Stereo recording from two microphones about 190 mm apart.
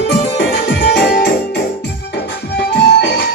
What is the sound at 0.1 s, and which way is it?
Music, 60° left (ahead or behind).